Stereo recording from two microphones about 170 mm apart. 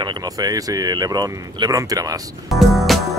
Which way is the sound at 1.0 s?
25° right (ahead or behind).